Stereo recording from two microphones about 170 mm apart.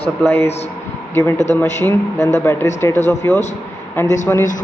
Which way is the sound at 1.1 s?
15° left (ahead or behind).